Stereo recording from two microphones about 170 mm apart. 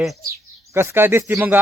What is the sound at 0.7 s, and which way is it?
Speech, 15° right (ahead or behind).